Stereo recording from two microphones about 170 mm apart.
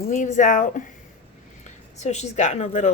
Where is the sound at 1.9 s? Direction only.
40° left (ahead or behind).